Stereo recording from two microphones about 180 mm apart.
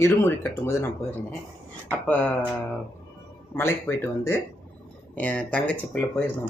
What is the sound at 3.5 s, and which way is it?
Speech, 15° left (ahead or behind).